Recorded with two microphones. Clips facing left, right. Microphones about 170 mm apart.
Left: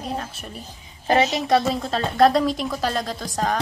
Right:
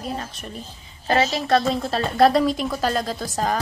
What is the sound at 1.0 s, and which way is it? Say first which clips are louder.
Speech: left 1 dB; 20° left (ahead or behind).